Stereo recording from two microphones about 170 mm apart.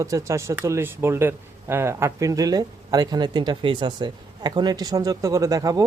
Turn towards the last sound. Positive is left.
turn(degrees=-20)  # may be behind; listen again after turning